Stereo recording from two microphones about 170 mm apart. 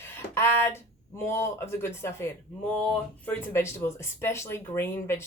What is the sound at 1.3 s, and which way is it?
Speech, 15° left (ahead or behind).